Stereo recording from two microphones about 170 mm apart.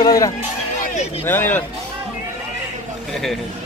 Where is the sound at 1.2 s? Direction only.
10° left (ahead or behind).